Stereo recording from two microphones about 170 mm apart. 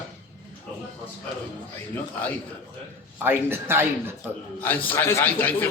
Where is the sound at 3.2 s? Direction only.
15° right (ahead or behind).